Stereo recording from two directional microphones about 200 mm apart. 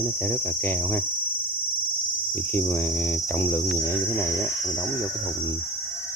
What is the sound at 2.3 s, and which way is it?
Speech, 10° left (ahead or behind).